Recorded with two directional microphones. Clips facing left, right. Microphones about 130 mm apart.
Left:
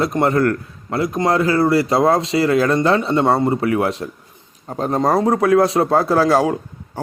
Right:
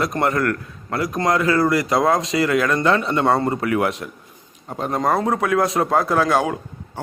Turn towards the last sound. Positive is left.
turn(degrees=30)  # may be behind; listen again after turning